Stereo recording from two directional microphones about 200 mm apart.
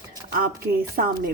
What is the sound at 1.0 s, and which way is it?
Speech, 45° right (ahead or behind).